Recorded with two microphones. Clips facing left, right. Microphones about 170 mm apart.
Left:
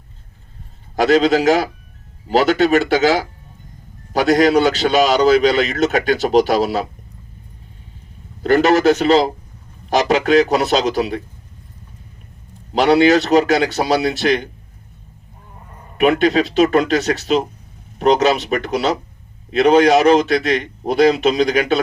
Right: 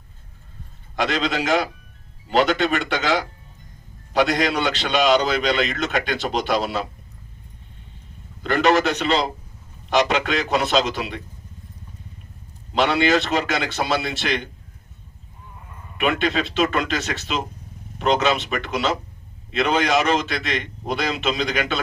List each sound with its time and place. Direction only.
1.0 s a man's voice: 40° left (ahead or behind)
4.2 s a man's voice: 45° left (ahead or behind)
8.4 s a man's voice: 40° left (ahead or behind)
12.7 s a man's voice: 40° left (ahead or behind)
16.0 s a man's voice: 40° left (ahead or behind)